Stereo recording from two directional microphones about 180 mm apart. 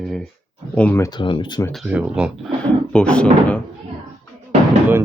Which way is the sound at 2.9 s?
5° left (ahead or behind).